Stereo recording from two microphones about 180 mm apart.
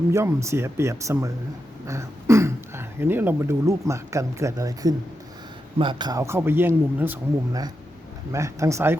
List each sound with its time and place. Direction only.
0.1 s speech: 15° right (ahead or behind)